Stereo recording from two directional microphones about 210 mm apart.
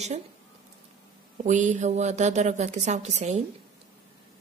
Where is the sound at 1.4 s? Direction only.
35° right (ahead or behind).